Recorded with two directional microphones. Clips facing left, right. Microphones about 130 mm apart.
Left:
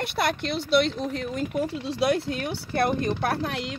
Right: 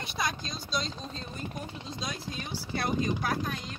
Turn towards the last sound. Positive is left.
turn(degrees=80)